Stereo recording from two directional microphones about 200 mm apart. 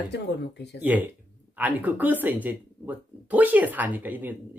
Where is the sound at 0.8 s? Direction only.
10° right (ahead or behind).